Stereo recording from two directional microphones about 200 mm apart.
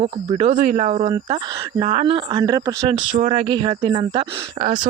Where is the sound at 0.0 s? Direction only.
30° right (ahead or behind).